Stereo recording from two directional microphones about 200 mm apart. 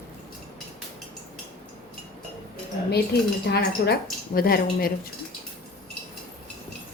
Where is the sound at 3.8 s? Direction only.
50° left (ahead or behind).